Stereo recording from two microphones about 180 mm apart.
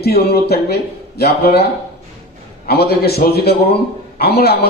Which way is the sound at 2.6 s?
60° left (ahead or behind).